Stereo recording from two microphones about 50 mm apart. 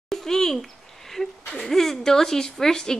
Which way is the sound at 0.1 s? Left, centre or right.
Centre.